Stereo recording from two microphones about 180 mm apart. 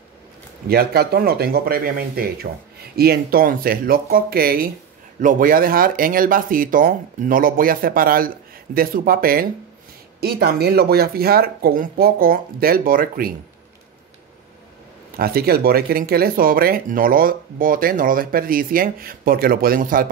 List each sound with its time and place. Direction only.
0.7 s speech: 60° right (ahead or behind)
15.1 s speech: 55° right (ahead or behind)